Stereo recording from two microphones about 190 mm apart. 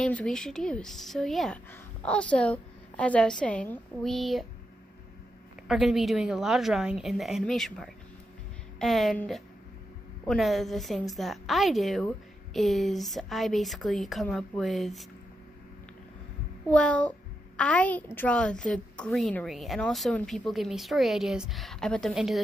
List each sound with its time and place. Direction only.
0.0 s a woman's voice: 5° left (ahead or behind)
5.7 s a woman's voice: centre (ahead or behind)
16.6 s a child's voice: 5° left (ahead or behind)